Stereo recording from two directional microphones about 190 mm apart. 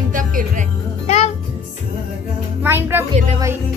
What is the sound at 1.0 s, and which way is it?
Music, 35° left (ahead or behind).